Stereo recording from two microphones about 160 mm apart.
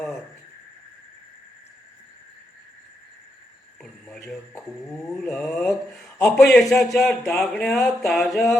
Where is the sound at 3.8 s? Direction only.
Centre (ahead or behind).